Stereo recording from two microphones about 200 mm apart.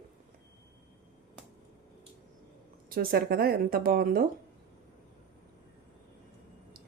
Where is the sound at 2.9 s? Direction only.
45° right (ahead or behind).